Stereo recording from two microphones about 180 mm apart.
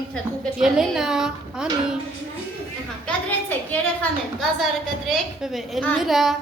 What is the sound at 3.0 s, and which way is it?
A woman's voice, 10° left (ahead or behind).